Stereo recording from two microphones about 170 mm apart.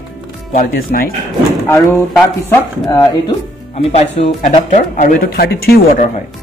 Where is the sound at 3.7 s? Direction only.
40° left (ahead or behind); by 6.0 s 65° left (ahead or behind).